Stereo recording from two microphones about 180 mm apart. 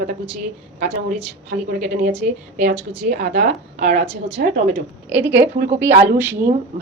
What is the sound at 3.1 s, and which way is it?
Speech, 60° right (ahead or behind).